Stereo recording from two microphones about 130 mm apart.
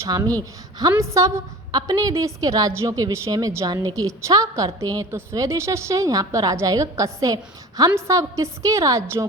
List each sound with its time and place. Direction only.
0.0 s a woman's voice: 25° right (ahead or behind)